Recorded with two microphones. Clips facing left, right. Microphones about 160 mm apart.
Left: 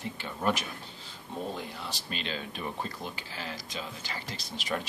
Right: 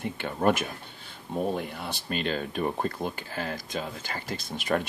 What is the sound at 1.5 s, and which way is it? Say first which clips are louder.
Speech: right 6 dB; 55° right (ahead or behind).